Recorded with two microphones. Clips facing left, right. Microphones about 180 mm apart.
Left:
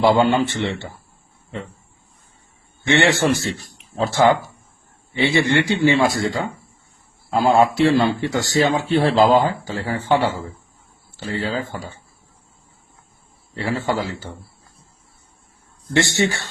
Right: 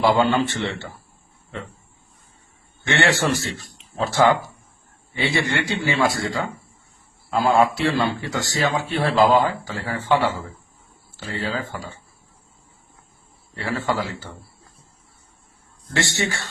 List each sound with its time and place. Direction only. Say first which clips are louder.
0.0 s speech: left 3 dB; 25° left (ahead or behind)
2.8 s speech: left 4 dB; 20° left (ahead or behind)
13.5 s speech: left 2 dB; 20° left (ahead or behind)
16.1 s speech: left 5 dB; 25° left (ahead or behind)